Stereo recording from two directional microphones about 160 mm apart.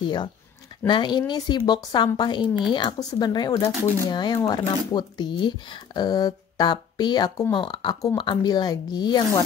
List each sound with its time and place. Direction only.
0.0 s speech: 30° left (ahead or behind)